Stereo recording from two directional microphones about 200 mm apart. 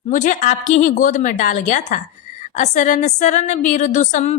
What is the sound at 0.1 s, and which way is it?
A woman's voice, 40° left (ahead or behind).